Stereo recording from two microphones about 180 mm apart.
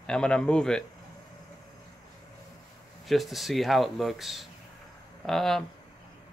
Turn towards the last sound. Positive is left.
turn(degrees=0)  # may be behind; listen again after turning